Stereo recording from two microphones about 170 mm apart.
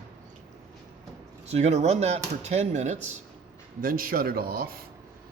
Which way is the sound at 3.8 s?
55° right (ahead or behind).